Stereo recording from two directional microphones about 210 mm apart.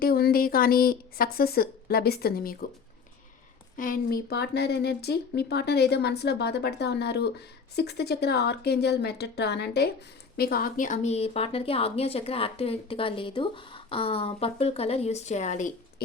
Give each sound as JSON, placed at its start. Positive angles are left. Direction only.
{"t": 0.0, "sound": "a woman's voice", "side_deg": 45}
{"t": 3.8, "sound": "a woman's voice", "side_deg": 40}